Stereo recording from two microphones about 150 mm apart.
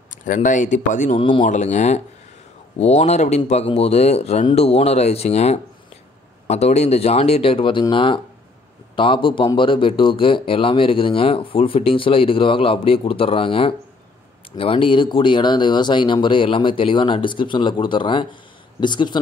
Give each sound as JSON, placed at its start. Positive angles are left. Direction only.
{"t": 0.1, "sound": "speech", "side_deg": 60}
{"t": 1.1, "sound": "speech", "side_deg": 35}
{"t": 1.4, "sound": "speech", "side_deg": 50}